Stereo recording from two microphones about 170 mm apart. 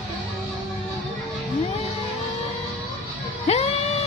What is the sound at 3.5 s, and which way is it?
Music, 40° left (ahead or behind).